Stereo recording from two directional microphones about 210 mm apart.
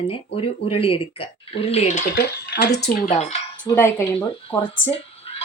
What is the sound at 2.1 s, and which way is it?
Speech, 50° left (ahead or behind).